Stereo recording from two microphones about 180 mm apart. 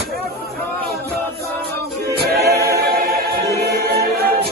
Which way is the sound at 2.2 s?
60° right (ahead or behind).